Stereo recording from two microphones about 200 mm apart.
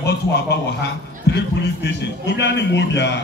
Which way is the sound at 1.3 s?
60° left (ahead or behind).